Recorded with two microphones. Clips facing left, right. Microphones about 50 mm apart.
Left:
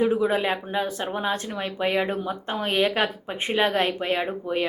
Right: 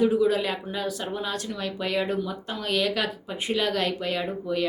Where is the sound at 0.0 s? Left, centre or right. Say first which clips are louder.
Even; left.